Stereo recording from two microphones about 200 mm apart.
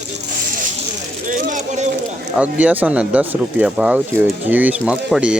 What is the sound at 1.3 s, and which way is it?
Speech, 40° right (ahead or behind).